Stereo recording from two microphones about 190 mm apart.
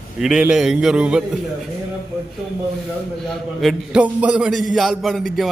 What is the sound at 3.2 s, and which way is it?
A man's voice, centre (ahead or behind).